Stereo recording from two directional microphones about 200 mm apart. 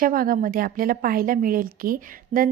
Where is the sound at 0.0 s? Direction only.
45° right (ahead or behind).